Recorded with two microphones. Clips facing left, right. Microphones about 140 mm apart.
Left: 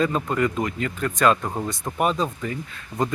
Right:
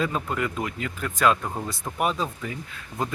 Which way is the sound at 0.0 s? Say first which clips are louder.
Left 5 dB; 5° right (ahead or behind).